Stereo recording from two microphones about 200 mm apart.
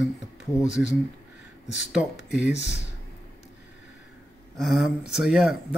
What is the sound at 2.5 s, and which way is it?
Speech, 60° left (ahead or behind).